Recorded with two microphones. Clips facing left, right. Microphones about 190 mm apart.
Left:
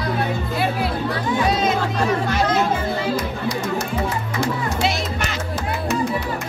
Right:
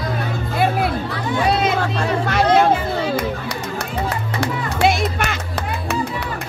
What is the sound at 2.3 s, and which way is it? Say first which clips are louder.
Chatter: right 4 dB; 65° right (ahead or behind).